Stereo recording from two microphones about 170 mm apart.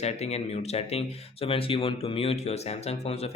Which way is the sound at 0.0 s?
40° left (ahead or behind).